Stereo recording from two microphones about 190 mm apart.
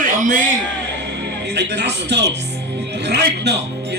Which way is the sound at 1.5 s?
65° right (ahead or behind).